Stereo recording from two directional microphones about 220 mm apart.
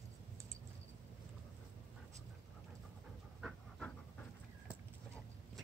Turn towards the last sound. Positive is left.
turn(degrees=0)  # may be behind; listen again after turning